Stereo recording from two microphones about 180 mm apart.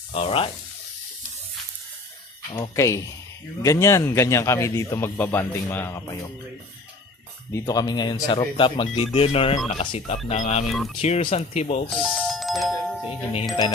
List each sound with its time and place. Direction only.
0.1 s speech: 30° left (ahead or behind)
2.5 s a sound: 20° left (ahead or behind)
3.6 s speech: 15° left (ahead or behind)
7.5 s speech: 20° left (ahead or behind); by 10.7 s 40° left (ahead or behind)
10.7 s speech: centre (ahead or behind)
11.0 s speech: 35° left (ahead or behind)
11.9 s doorbell: centre (ahead or behind)